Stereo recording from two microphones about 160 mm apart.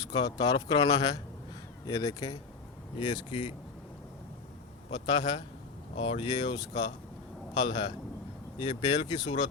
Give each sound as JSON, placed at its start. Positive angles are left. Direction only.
{"t": 0.1, "sound": "speech", "side_deg": 25}
{"t": 4.9, "sound": "speech", "side_deg": 35}